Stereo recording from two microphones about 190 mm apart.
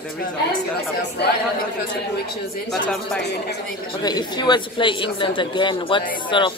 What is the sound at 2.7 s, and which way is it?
Speech, 5° left (ahead or behind).